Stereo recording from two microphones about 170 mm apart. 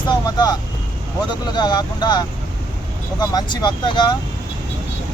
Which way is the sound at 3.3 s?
25° left (ahead or behind).